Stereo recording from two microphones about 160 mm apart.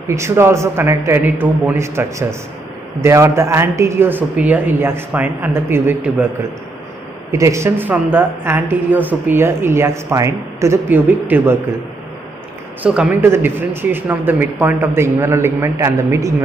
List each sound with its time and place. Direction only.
0.0 s a woman's voice: 15° right (ahead or behind)
7.2 s a woman's voice: 20° right (ahead or behind)
12.8 s a woman's voice: 10° right (ahead or behind)